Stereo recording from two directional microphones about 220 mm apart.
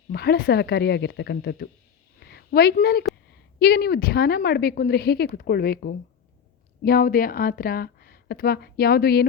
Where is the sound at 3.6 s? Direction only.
45° left (ahead or behind).